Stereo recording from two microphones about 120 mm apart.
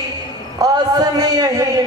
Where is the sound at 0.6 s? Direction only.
30° right (ahead or behind).